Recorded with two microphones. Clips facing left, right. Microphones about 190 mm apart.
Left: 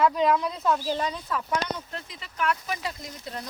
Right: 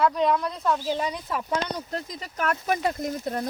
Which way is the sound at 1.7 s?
40° right (ahead or behind).